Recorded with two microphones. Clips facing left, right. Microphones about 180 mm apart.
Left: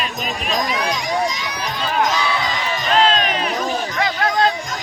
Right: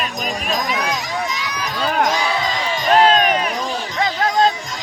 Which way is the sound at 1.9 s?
50° right (ahead or behind).